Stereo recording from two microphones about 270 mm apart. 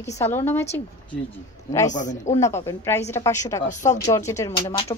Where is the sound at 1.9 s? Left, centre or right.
Left.